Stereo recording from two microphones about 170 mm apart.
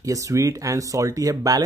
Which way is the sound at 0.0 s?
20° right (ahead or behind).